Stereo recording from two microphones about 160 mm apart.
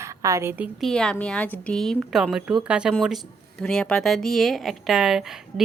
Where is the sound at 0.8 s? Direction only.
5° left (ahead or behind).